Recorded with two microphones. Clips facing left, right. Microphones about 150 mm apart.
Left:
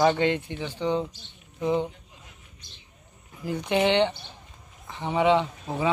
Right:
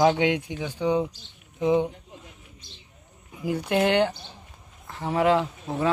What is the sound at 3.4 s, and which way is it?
Speech, 5° right (ahead or behind).